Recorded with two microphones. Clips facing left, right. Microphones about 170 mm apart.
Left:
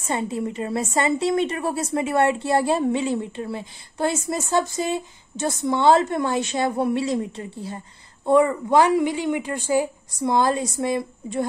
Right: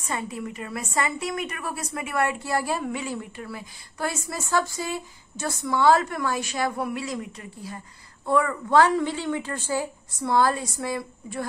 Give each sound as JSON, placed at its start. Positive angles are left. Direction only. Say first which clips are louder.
{"t": 0.0, "sound": "a woman's voice", "louder": "left 6 dB", "side_deg": 25}